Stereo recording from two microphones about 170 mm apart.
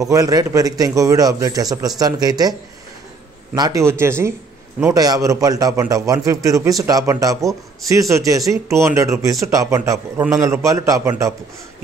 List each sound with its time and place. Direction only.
0.0 s a man's voice: 20° right (ahead or behind)
3.5 s a man's voice: 20° right (ahead or behind)